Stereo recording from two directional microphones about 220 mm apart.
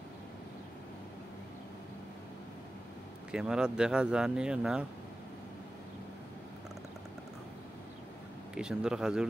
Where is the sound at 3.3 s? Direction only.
5° right (ahead or behind).